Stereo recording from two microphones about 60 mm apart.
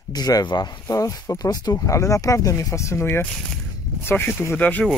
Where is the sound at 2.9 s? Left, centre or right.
Left.